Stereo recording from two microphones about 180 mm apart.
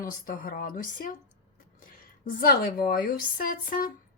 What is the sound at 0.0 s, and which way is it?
Speech, 50° left (ahead or behind).